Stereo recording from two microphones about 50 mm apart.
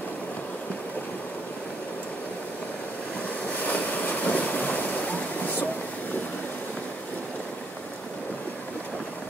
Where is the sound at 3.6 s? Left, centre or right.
Left.